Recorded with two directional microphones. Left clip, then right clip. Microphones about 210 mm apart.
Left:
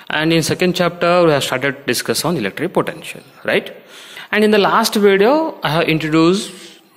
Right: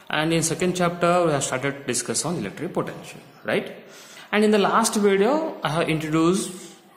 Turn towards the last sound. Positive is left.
turn(degrees=30)  # may be behind; listen again after turning